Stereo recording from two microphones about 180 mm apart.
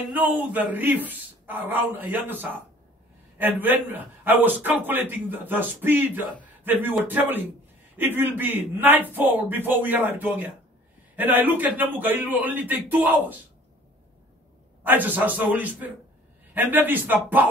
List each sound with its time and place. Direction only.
0.1 s a man's voice: 10° right (ahead or behind)
14.8 s a man's voice: 10° right (ahead or behind)